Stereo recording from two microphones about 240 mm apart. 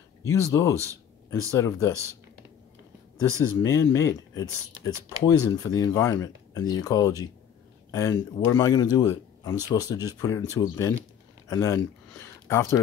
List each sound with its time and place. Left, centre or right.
0.5 s a man's voice: centre
3.3 s speech: left
3.6 s a man's voice: centre